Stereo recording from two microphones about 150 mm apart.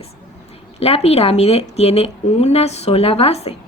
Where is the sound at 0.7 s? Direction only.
45° left (ahead or behind).